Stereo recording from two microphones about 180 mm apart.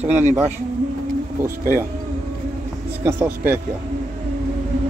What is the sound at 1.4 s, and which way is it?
Speech, 15° right (ahead or behind).